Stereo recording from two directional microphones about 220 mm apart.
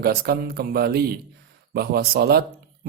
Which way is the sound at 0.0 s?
45° right (ahead or behind).